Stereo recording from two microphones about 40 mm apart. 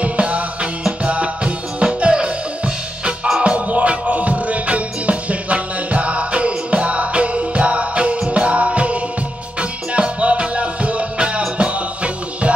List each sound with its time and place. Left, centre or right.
0.0 s music: right
3.4 s music: right